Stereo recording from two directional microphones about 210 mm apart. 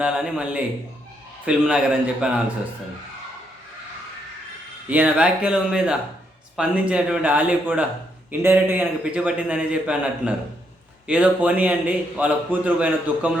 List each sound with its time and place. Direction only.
0.0 s a man's voice: 5° right (ahead or behind)
4.9 s a man's voice: 5° right (ahead or behind)